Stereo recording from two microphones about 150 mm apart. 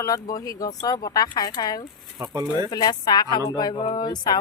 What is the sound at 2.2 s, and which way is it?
Speech, 25° right (ahead or behind).